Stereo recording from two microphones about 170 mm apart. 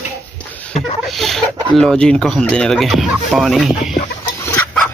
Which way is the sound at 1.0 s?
Centre (ahead or behind).